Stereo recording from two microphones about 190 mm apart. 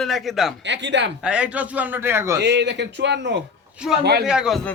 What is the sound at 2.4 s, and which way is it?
A man's voice, 65° right (ahead or behind).